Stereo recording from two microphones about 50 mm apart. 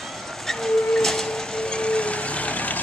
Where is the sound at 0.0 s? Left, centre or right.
Centre.